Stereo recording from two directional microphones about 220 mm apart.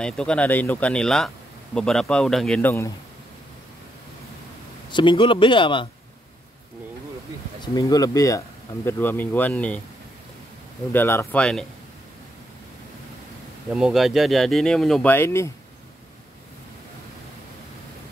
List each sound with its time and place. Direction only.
0.0 s speech: 5° left (ahead or behind)
4.9 s speech: 20° left (ahead or behind)
7.6 s speech: 15° left (ahead or behind)
10.9 s speech: 10° left (ahead or behind)
13.7 s speech: 5° right (ahead or behind); by 15.5 s 10° left (ahead or behind)